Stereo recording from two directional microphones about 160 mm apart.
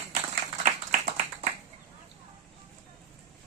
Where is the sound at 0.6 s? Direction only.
45° right (ahead or behind).